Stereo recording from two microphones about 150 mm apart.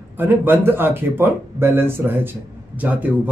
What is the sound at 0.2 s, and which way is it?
Speech, 15° right (ahead or behind).